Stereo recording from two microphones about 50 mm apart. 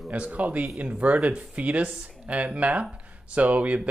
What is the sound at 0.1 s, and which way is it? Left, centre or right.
Speech, right.